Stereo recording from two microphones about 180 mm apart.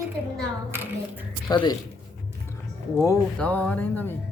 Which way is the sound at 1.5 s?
25° left (ahead or behind).